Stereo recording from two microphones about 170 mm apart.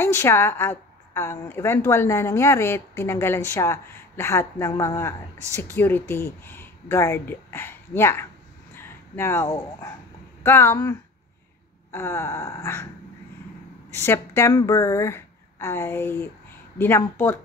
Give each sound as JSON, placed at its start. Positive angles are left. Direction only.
{"t": 0.0, "sound": "a woman's voice", "side_deg": 15}
{"t": 8.7, "sound": "a sound", "side_deg": 15}
{"t": 10.4, "sound": "a woman's voice", "side_deg": 15}
{"t": 13.9, "sound": "a woman's voice", "side_deg": 15}